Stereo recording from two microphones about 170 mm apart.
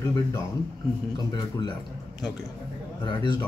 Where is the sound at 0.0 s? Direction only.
20° left (ahead or behind).